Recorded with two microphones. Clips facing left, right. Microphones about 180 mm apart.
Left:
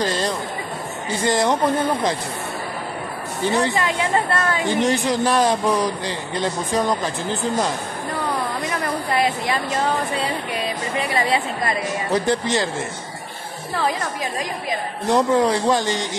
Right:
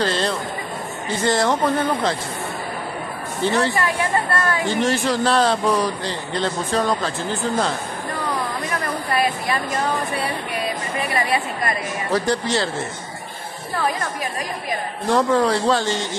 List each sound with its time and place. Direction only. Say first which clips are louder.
0.0 s speech: right 1 dB; 10° left (ahead or behind)
3.5 s speech: left 1 dB; 20° left (ahead or behind)
8.6 s a sound: left 1 dB; 20° left (ahead or behind)
11.0 s a woman's voice: left 1 dB; 20° left (ahead or behind)
15.0 s speech: even; 20° left (ahead or behind)